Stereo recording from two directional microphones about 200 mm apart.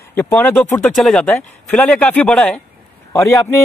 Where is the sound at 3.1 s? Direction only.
15° left (ahead or behind).